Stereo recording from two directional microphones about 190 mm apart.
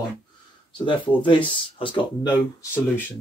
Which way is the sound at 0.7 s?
25° left (ahead or behind).